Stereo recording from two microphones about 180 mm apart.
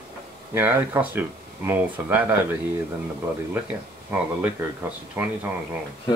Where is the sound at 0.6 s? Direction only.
10° right (ahead or behind).